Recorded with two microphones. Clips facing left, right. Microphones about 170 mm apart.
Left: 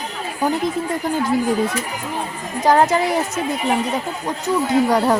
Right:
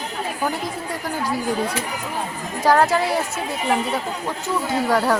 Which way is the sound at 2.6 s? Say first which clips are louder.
Left 2 dB; 20° left (ahead or behind).